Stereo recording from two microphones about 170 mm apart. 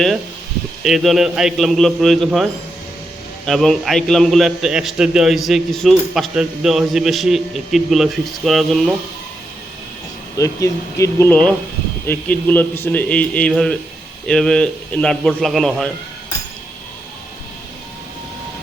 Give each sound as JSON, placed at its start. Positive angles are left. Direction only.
{"t": 0.9, "sound": "a man's voice", "side_deg": 0}
{"t": 10.3, "sound": "a man's voice", "side_deg": 20}